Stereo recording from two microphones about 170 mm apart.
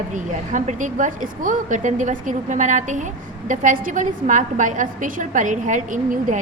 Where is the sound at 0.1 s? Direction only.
45° right (ahead or behind).